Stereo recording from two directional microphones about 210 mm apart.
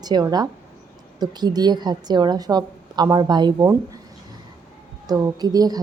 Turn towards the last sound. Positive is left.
turn(degrees=-20)  # may be behind; listen again after turning